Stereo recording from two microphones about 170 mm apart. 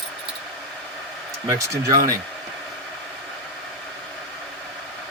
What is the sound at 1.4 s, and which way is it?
Speech, 20° right (ahead or behind).